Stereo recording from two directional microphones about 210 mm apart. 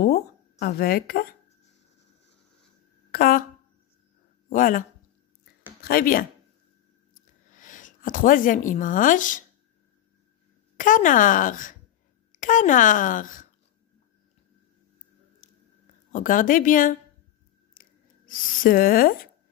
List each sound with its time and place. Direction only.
0.0 s a sound: 50° left (ahead or behind)
3.1 s a sound: 45° left (ahead or behind)
4.5 s a woman's voice: 40° left (ahead or behind)
7.5 s speech: 40° left (ahead or behind)
10.8 s a woman's voice: 40° left (ahead or behind)
16.1 s a woman's voice: 40° left (ahead or behind)
18.3 s a woman's voice: 40° left (ahead or behind)